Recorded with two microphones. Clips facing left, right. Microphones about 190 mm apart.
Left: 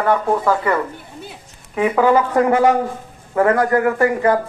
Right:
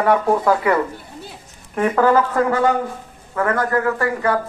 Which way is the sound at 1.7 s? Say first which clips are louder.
Left 1 dB; 5° left (ahead or behind).